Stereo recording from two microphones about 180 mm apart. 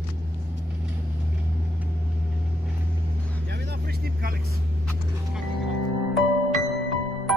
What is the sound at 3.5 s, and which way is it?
Vehicle, 70° right (ahead or behind).